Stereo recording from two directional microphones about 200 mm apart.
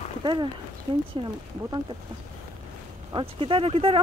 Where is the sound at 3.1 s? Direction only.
25° right (ahead or behind).